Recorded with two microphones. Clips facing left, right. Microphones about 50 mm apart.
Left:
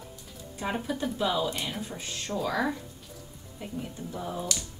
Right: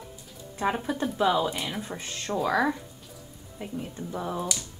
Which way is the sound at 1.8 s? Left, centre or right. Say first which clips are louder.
Right 2 dB; right.